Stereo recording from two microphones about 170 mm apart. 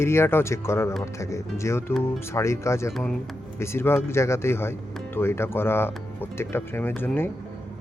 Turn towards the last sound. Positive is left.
turn(degrees=10)  # may be behind; listen again after turning